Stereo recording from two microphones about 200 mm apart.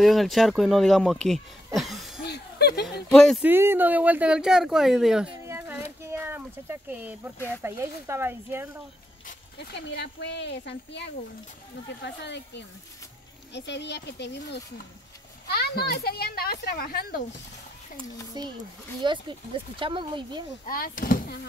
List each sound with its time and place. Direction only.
0.0 s speech: centre (ahead or behind)
1.8 s a sound: centre (ahead or behind)
2.2 s a sound: 55° left (ahead or behind)
3.1 s speech: centre (ahead or behind)
3.4 s speech: 10° right (ahead or behind)
7.3 s speech: 10° left (ahead or behind)
7.6 s speech: 15° right (ahead or behind)
9.6 s a child's voice: 55° left (ahead or behind)
18.4 s speech: 20° right (ahead or behind)
20.6 s speech: 45° left (ahead or behind)